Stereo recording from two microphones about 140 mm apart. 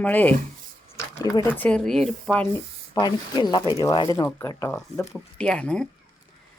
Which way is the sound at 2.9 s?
30° left (ahead or behind).